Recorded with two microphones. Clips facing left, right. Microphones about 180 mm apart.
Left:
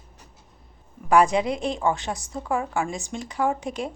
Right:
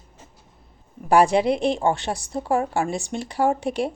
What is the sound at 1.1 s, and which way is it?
A woman's voice, 30° right (ahead or behind).